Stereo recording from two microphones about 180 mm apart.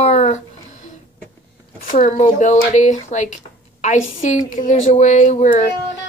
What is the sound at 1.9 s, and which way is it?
Speech, 45° left (ahead or behind).